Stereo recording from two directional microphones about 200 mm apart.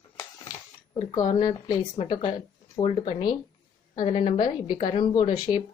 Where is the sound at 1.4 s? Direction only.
20° left (ahead or behind).